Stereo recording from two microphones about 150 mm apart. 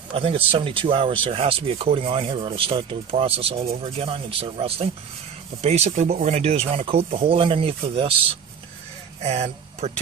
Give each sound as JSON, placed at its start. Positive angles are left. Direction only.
{"t": 0.1, "sound": "speech", "side_deg": -40}